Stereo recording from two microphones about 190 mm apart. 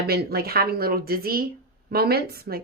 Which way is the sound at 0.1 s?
55° right (ahead or behind).